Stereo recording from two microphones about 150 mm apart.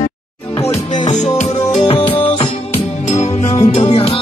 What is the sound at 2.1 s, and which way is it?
Music, 35° left (ahead or behind).